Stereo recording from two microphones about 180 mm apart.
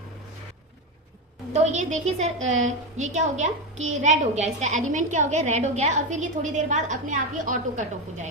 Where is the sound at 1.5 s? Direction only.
40° right (ahead or behind).